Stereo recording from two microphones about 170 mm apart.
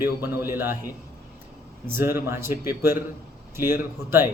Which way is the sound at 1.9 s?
15° right (ahead or behind).